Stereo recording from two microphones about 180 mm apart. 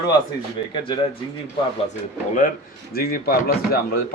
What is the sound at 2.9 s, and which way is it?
Speech, 55° left (ahead or behind).